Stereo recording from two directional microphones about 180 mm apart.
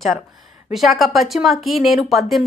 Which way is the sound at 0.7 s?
Centre (ahead or behind).